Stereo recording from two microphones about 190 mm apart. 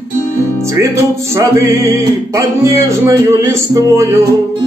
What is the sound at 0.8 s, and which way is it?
Music, 15° right (ahead or behind).